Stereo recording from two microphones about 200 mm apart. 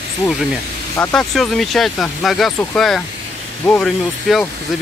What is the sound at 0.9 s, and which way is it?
Speech, 5° left (ahead or behind).